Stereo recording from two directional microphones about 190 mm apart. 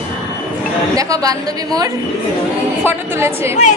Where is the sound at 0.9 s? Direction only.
20° right (ahead or behind).